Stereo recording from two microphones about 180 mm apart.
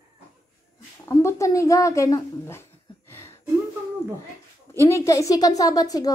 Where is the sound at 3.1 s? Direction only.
15° left (ahead or behind).